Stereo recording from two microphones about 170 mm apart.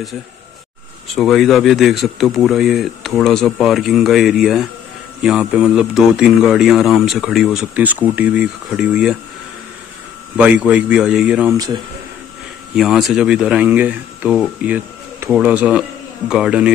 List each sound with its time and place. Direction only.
1.1 s a man's voice: centre (ahead or behind)
10.3 s speech: 10° right (ahead or behind)
11.5 s speech: 20° right (ahead or behind)
12.7 s a man's voice: centre (ahead or behind)